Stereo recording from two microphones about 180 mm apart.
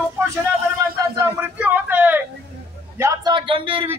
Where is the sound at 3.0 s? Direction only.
20° right (ahead or behind).